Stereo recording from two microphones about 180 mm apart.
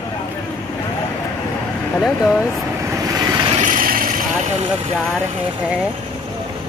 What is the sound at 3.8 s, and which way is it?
Vehicle, 50° right (ahead or behind).